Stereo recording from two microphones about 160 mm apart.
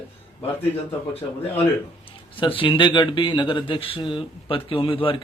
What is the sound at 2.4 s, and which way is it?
A man's voice, 30° left (ahead or behind).